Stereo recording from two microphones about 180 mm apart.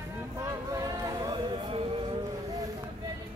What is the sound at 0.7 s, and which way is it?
Chatter, 20° right (ahead or behind).